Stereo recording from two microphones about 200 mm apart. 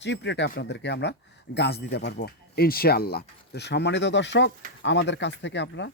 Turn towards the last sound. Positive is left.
turn(degrees=60)  # may be behind; listen again after turning